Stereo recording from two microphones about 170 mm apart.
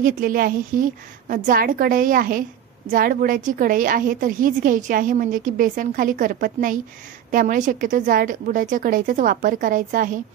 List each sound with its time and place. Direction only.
0.0 s a woman's voice: 55° right (ahead or behind)